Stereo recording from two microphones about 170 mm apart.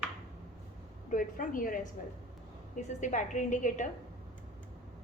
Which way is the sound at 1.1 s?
55° left (ahead or behind).